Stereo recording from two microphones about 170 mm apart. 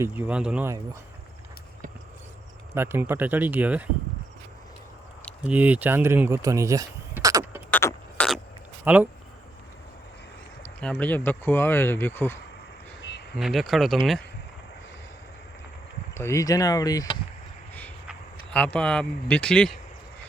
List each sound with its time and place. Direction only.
0.0 s speech: 10° right (ahead or behind)
2.7 s speech: 15° right (ahead or behind)
5.4 s speech: 10° right (ahead or behind)
7.7 s a sound: 10° left (ahead or behind)
8.8 s speech: 10° right (ahead or behind)
10.8 s speech: 5° left (ahead or behind)
13.0 s a sound: 90° left
13.3 s speech: centre (ahead or behind)
16.1 s speech: 15° left (ahead or behind)
18.5 s speech: 5° left (ahead or behind)